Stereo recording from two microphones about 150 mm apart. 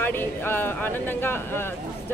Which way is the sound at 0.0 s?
15° left (ahead or behind).